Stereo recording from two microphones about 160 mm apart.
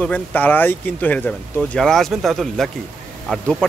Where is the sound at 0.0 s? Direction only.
10° left (ahead or behind).